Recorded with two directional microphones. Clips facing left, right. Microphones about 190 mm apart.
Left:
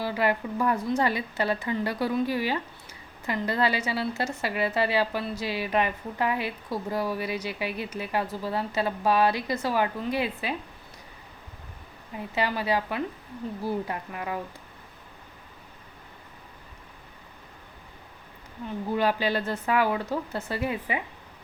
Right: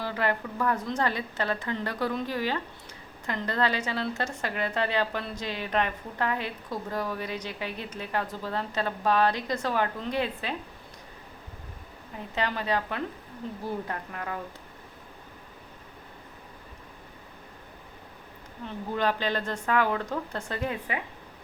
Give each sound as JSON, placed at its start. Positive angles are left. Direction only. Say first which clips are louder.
{"t": 0.0, "sound": "a woman's voice", "louder": "left 3 dB", "side_deg": 10}
{"t": 12.3, "sound": "a woman's voice", "louder": "left 2 dB", "side_deg": 10}
{"t": 18.9, "sound": "a woman's voice", "louder": "left 2 dB", "side_deg": 10}